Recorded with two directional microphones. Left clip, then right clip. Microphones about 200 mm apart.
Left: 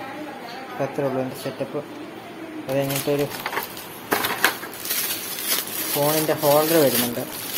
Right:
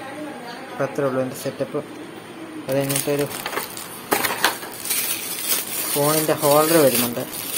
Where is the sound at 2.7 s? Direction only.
Centre (ahead or behind).